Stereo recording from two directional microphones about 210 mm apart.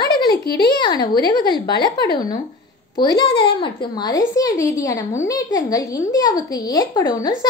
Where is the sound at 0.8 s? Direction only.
20° left (ahead or behind).